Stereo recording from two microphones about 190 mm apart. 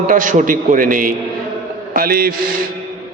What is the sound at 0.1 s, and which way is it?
A man's voice, 45° right (ahead or behind).